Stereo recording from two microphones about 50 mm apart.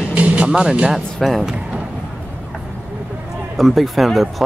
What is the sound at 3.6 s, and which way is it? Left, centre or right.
Speech, centre.